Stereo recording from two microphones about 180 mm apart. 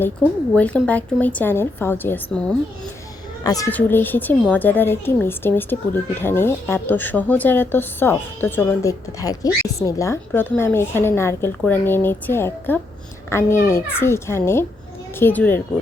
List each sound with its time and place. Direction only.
0.5 s a woman's voice: 10° left (ahead or behind)
3.4 s a child's voice: 20° left (ahead or behind)